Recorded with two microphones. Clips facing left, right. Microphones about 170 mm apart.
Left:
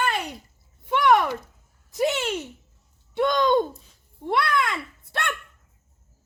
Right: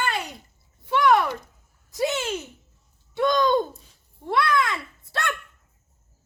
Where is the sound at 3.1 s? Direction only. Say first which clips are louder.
Even; 25° left (ahead or behind).